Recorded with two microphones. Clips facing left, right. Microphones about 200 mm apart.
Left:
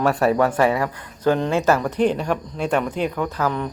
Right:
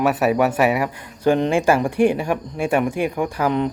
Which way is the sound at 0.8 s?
25° right (ahead or behind).